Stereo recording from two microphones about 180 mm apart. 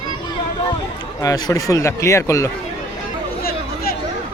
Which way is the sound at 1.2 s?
20° left (ahead or behind).